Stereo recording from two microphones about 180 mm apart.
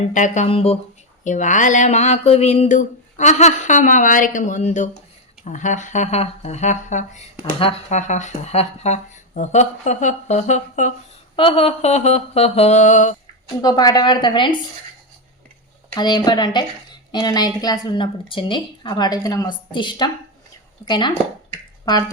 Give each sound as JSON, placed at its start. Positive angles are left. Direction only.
{"t": 0.1, "sound": "speech", "side_deg": 40}
{"t": 1.2, "sound": "speech", "side_deg": 45}
{"t": 11.3, "sound": "speech", "side_deg": 30}
{"t": 13.6, "sound": "a woman's voice", "side_deg": 20}
{"t": 16.0, "sound": "a woman's voice", "side_deg": 25}